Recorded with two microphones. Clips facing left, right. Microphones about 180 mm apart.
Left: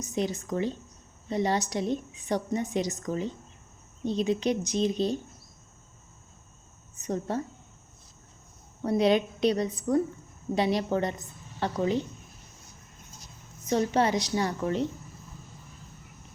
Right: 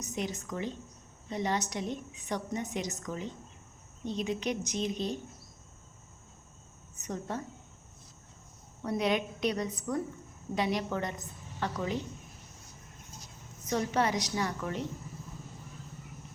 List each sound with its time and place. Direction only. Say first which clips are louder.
0.0 s a woman's voice: left 6 dB; 30° left (ahead or behind)
7.0 s a woman's voice: left 6 dB; 30° left (ahead or behind)
8.8 s a woman's voice: left 7 dB; 30° left (ahead or behind)
13.7 s a woman's voice: left 5 dB; 30° left (ahead or behind)